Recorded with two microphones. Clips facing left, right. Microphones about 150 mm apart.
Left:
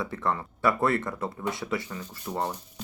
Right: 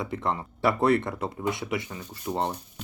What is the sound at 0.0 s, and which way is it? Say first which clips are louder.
Speech: even; 20° right (ahead or behind).